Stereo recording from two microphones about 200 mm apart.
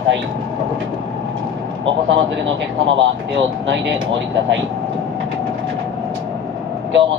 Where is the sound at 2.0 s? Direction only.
65° right (ahead or behind).